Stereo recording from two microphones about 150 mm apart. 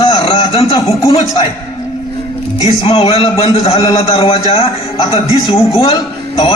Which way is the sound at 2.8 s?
40° left (ahead or behind).